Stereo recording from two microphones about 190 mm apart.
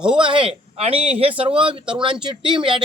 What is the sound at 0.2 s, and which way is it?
Speech, 25° right (ahead or behind).